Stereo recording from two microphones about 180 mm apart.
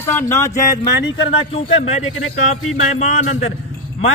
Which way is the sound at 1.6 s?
35° left (ahead or behind).